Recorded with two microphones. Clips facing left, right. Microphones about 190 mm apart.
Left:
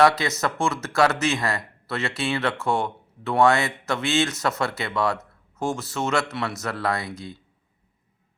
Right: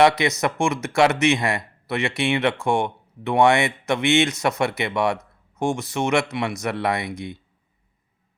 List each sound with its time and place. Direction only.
0.0 s speech: 20° right (ahead or behind)